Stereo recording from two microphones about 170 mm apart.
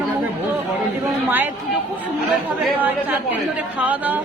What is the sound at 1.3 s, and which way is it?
Speech, 10° right (ahead or behind).